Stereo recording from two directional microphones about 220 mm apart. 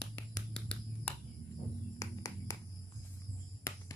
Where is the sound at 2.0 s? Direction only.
15° left (ahead or behind).